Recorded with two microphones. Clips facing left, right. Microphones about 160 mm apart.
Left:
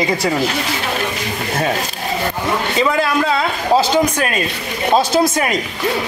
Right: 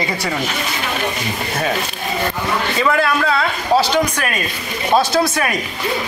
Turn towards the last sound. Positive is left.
turn(degrees=20)  # may be behind; listen again after turning